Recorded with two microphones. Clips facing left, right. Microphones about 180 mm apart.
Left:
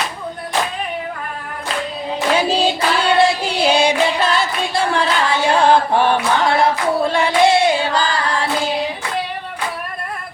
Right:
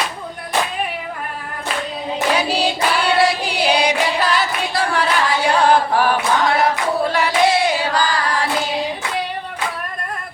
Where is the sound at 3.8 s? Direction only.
25° left (ahead or behind).